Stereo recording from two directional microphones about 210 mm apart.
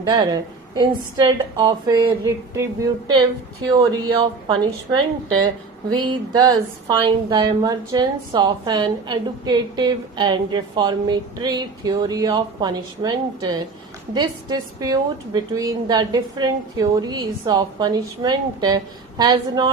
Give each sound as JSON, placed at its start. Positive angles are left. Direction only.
{"t": 0.0, "sound": "speech", "side_deg": -20}
{"t": 14.8, "sound": "speech", "side_deg": -20}